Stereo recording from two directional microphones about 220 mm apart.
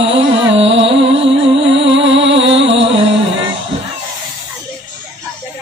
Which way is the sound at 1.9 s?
55° right (ahead or behind).